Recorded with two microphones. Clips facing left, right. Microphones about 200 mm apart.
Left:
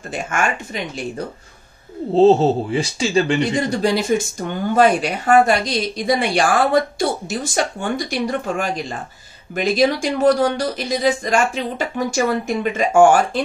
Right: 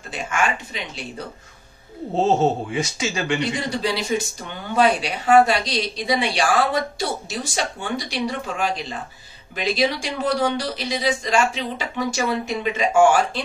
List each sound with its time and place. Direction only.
0.1 s a woman's voice: 50° left (ahead or behind)
2.1 s speech: 30° left (ahead or behind)
3.5 s a woman's voice: 45° left (ahead or behind)